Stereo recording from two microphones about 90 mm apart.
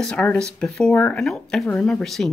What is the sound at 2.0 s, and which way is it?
Speech, centre (ahead or behind).